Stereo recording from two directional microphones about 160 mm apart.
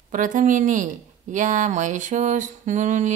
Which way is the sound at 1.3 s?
55° right (ahead or behind).